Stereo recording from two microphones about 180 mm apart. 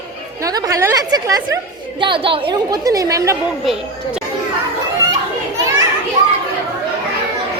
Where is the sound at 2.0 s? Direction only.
30° right (ahead or behind).